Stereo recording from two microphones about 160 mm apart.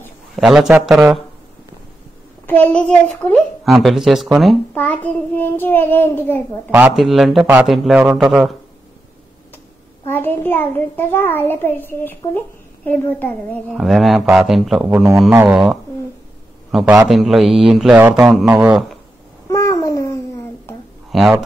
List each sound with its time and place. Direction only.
0.4 s speech: centre (ahead or behind)
2.4 s a child's voice: 10° left (ahead or behind)
3.6 s speech: centre (ahead or behind)
4.7 s a child's voice: 10° left (ahead or behind)
6.7 s speech: 5° right (ahead or behind)
10.0 s a child's voice: 15° left (ahead or behind)
13.7 s speech: centre (ahead or behind)
19.5 s babbling: 20° left (ahead or behind)
21.1 s speech: centre (ahead or behind)